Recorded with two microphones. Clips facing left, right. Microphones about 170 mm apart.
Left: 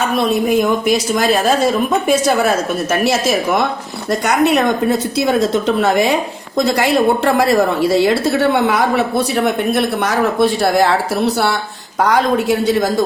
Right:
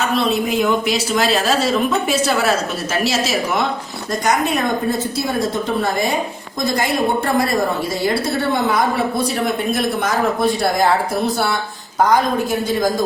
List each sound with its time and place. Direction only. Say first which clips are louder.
0.2 s a woman's voice: left 6 dB; 50° left (ahead or behind)
4.1 s a woman's voice: left 5 dB; 70° left (ahead or behind)